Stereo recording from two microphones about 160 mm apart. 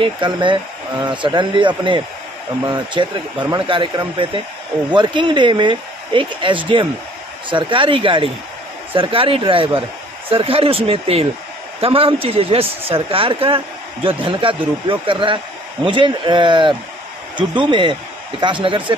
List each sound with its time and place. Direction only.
0.0 s speech: 30° right (ahead or behind)